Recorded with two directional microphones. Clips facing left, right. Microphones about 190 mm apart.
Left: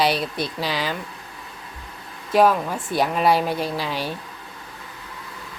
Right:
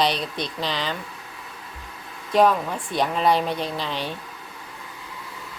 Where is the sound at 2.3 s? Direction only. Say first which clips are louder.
Left 1 dB; 5° left (ahead or behind).